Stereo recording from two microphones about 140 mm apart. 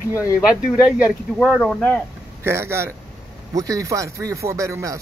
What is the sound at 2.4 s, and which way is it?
Speech, 20° right (ahead or behind).